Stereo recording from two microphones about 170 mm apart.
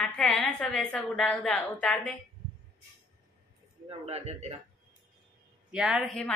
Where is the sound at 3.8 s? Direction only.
40° right (ahead or behind).